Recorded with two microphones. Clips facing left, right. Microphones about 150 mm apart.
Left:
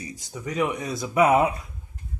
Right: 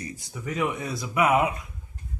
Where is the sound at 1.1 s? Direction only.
35° left (ahead or behind).